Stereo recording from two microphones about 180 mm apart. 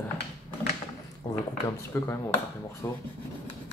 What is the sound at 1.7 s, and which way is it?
Speech, 15° left (ahead or behind).